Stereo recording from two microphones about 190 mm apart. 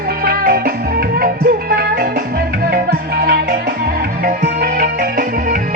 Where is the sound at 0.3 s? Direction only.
55° right (ahead or behind).